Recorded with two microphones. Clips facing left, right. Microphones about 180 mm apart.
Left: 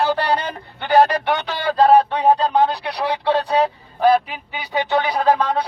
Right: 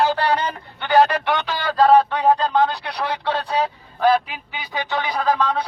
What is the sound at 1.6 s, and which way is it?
Speech, 20° left (ahead or behind).